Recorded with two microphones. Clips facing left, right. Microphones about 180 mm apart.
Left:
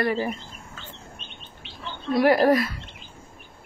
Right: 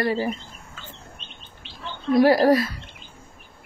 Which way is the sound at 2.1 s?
30° right (ahead or behind).